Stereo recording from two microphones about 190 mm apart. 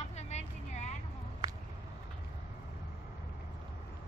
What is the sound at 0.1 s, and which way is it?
Vehicle, 35° left (ahead or behind).